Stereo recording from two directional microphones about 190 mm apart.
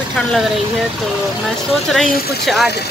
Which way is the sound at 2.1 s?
55° left (ahead or behind).